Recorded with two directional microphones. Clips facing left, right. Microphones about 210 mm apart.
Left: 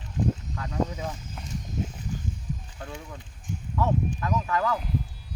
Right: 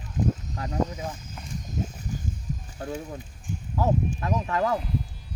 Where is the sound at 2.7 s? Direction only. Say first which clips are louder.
Right 6 dB; 40° right (ahead or behind).